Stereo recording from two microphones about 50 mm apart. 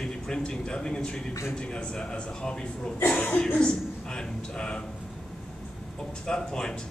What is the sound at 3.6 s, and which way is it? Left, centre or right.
A man's voice, centre.